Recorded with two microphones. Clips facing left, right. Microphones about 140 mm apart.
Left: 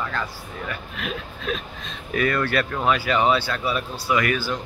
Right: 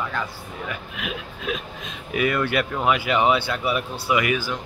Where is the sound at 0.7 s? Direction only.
10° right (ahead or behind).